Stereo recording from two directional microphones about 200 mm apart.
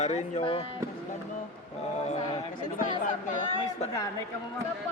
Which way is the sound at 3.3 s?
40° left (ahead or behind).